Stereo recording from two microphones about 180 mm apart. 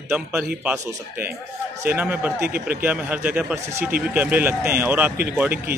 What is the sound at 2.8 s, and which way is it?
Speech, 10° right (ahead or behind).